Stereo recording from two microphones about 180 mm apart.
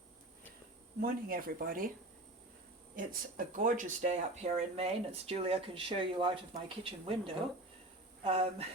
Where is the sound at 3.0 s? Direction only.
50° right (ahead or behind); by 8.7 s 35° right (ahead or behind).